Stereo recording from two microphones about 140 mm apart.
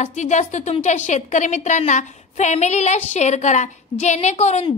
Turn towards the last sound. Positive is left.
turn(degrees=50)  # may be behind; listen again after turning